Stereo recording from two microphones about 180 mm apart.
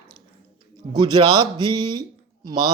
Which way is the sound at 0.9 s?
25° right (ahead or behind).